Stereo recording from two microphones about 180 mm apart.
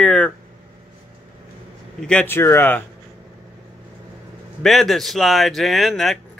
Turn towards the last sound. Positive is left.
turn(degrees=0)  # may be behind; listen again after turning